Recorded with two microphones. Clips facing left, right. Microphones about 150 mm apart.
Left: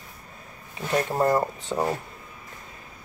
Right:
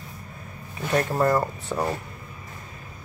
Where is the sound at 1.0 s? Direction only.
20° left (ahead or behind).